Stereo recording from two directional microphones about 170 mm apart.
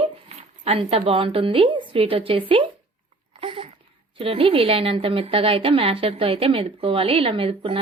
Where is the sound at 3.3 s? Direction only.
35° right (ahead or behind).